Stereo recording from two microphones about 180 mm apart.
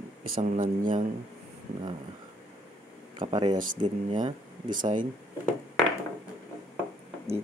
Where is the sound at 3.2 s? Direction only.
25° right (ahead or behind).